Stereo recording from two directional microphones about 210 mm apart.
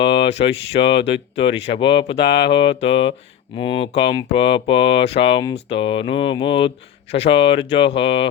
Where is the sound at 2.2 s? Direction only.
55° left (ahead or behind).